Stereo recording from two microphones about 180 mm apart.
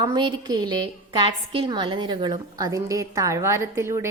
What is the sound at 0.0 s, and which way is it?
A woman's voice, 25° right (ahead or behind).